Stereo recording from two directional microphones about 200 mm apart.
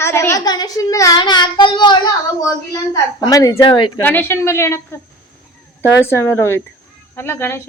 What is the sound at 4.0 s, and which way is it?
A child's voice, 10° left (ahead or behind).